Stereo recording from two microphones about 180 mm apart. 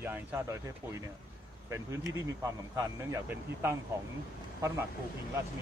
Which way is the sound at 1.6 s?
20° right (ahead or behind).